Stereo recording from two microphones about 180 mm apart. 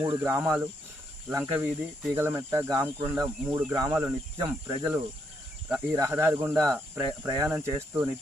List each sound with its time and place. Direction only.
0.2 s cricket: 15° right (ahead or behind)